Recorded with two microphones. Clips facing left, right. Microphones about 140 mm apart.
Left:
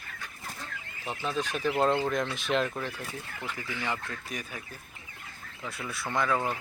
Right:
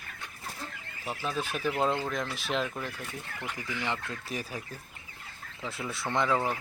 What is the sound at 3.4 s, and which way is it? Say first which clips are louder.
Speech: even; 15° right (ahead or behind).